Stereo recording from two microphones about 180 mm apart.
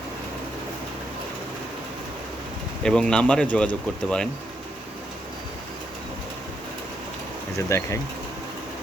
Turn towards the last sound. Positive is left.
turn(degrees=15)  # may be behind; listen again after turning